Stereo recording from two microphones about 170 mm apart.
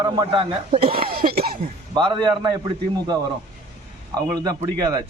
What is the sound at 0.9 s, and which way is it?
Speech, 60° right (ahead or behind).